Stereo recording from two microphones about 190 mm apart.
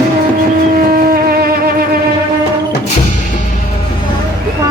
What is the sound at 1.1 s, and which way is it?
Music, 50° right (ahead or behind).